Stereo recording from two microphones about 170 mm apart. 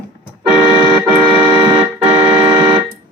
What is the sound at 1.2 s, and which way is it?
Music, 25° right (ahead or behind).